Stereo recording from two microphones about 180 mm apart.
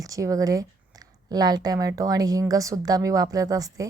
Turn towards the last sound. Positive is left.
turn(degrees=-20)  # may be behind; listen again after turning